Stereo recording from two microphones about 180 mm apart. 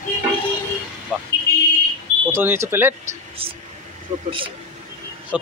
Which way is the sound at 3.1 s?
30° right (ahead or behind).